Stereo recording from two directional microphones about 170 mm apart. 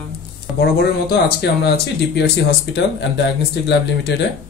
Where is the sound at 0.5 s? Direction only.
75° left (ahead or behind).